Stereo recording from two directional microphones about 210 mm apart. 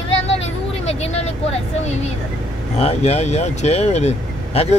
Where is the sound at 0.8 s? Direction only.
30° left (ahead or behind).